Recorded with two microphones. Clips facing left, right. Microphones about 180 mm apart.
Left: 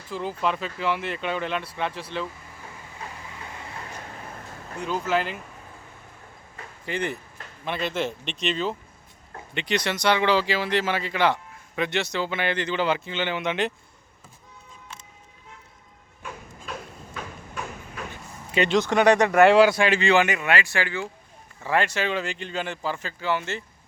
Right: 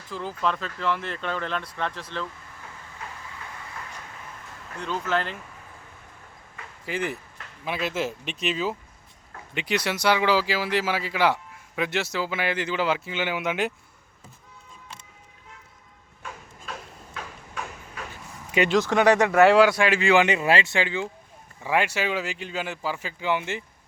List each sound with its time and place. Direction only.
0.1 s speech: 10° left (ahead or behind)
4.8 s speech: 10° left (ahead or behind)
6.8 s speech: 5° right (ahead or behind)
18.5 s speech: 5° right (ahead or behind)
20.1 s speech: 20° right (ahead or behind)